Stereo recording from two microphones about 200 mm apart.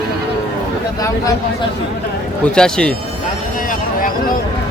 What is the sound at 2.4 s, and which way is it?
Speech, 5° left (ahead or behind).